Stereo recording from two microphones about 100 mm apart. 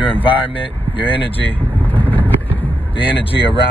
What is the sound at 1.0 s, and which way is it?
Speech, 60° left (ahead or behind).